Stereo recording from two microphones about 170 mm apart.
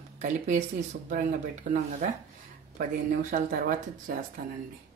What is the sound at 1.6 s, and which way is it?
Speech, 55° right (ahead or behind).